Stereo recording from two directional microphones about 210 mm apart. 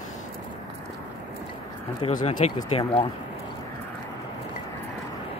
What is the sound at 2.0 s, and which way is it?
Speech, 30° left (ahead or behind).